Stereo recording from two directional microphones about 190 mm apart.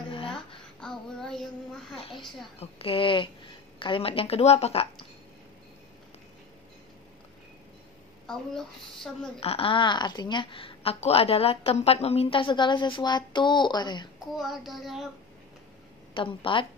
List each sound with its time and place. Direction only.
0.7 s child singing: 5° left (ahead or behind)
2.0 s a child's voice: 30° left (ahead or behind)
8.3 s speech: centre (ahead or behind)
9.4 s a woman's voice: 30° left (ahead or behind)
14.2 s speech: centre (ahead or behind)
16.2 s a woman's voice: 25° left (ahead or behind)